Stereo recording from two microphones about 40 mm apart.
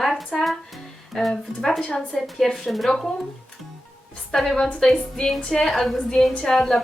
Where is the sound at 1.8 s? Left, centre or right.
Left.